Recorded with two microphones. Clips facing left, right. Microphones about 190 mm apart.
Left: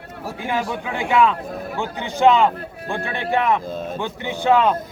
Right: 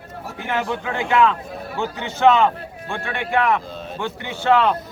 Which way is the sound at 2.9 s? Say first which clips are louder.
Even; 20° left (ahead or behind).